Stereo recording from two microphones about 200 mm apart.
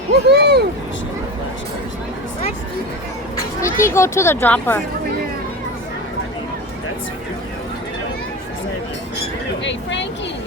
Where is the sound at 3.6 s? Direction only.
15° left (ahead or behind).